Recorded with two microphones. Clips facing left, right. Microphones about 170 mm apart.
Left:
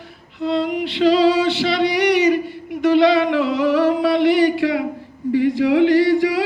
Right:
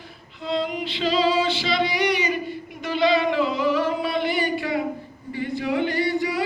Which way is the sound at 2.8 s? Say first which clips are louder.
Left 7 dB; 70° left (ahead or behind).